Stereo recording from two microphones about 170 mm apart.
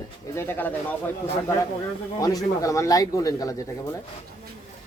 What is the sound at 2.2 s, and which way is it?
A man's voice, 20° left (ahead or behind).